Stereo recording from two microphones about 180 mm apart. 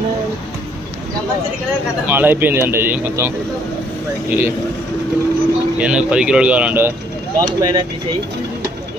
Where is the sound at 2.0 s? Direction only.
10° right (ahead or behind).